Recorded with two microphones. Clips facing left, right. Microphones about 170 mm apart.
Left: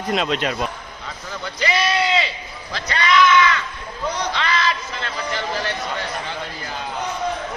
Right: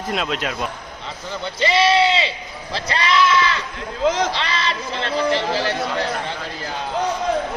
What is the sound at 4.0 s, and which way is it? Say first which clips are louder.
Speech: right 7 dB; 90° right.